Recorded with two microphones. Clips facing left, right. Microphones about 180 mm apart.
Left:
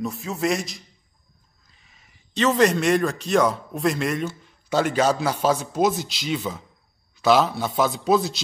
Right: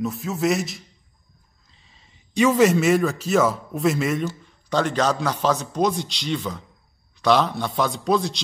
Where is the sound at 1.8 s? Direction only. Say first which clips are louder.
Right 2 dB; 30° right (ahead or behind).